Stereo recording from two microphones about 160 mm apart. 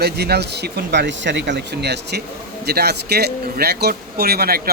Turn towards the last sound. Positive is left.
turn(degrees=-70)  # may be behind; listen again after turning